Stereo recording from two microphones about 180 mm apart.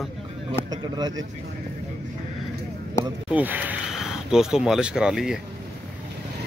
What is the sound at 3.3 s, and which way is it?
Speech, 10° right (ahead or behind).